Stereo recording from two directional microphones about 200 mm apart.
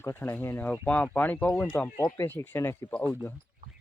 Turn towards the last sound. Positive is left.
turn(degrees=10)  # may be behind; listen again after turning